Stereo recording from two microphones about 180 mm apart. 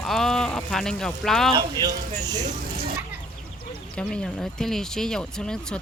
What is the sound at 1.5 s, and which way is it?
Speech, 20° right (ahead or behind).